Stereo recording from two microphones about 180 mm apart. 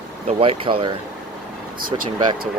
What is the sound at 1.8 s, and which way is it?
Speech, 50° right (ahead or behind).